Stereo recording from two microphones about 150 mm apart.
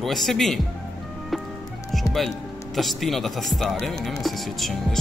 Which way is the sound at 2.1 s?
Centre (ahead or behind).